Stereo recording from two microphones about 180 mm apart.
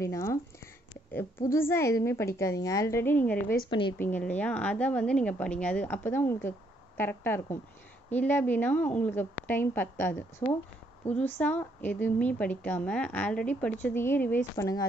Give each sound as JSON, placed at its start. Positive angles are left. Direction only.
{"t": 0.0, "sound": "a woman's voice", "side_deg": 15}